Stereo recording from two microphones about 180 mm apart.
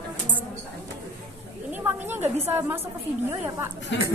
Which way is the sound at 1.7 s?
10° right (ahead or behind).